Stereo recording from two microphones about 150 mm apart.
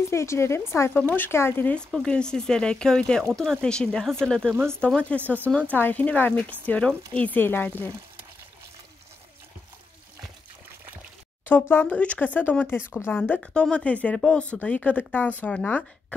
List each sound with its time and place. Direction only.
0.1 s speech: 20° left (ahead or behind)
11.4 s speech: 15° left (ahead or behind)
13.2 s speech: 5° left (ahead or behind)